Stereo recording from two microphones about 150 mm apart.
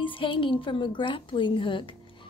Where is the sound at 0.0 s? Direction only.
35° left (ahead or behind).